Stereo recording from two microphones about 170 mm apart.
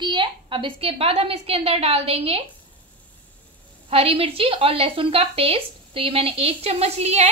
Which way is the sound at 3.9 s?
35° right (ahead or behind).